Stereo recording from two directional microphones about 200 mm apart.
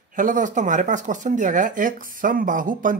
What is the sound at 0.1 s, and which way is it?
Speech, 40° right (ahead or behind).